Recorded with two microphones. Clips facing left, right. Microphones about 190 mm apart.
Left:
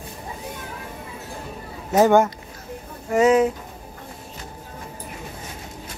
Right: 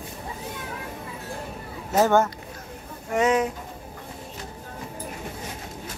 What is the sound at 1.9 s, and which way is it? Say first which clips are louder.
Speech: left 4 dB; 15° left (ahead or behind).